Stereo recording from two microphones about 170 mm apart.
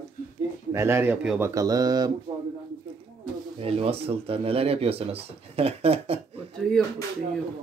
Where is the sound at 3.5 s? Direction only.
35° right (ahead or behind).